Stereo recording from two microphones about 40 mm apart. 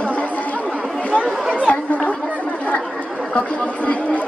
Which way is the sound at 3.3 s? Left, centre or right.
Left.